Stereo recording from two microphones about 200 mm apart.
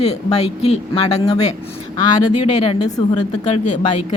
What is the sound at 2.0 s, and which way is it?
Speech, 30° left (ahead or behind).